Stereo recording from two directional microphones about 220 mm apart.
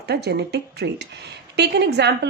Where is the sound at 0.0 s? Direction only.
50° right (ahead or behind).